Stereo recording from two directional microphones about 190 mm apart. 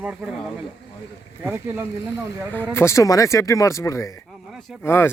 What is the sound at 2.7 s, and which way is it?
Speech, 15° left (ahead or behind).